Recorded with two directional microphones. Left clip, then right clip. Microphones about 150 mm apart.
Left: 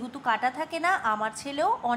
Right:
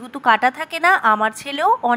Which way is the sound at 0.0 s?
40° right (ahead or behind).